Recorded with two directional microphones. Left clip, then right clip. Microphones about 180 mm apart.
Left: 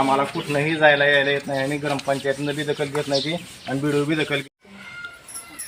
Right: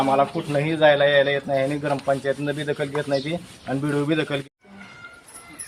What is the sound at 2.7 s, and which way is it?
Speech, centre (ahead or behind).